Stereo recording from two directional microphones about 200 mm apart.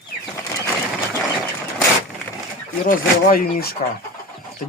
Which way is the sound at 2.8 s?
45° left (ahead or behind).